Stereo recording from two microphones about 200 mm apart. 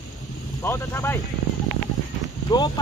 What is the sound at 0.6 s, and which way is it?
Speech, 10° left (ahead or behind).